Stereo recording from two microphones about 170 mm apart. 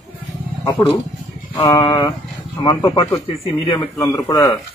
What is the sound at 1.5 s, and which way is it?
A man's voice, 20° left (ahead or behind).